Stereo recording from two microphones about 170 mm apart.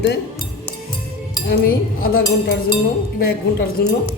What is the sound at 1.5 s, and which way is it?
Speech, 65° left (ahead or behind).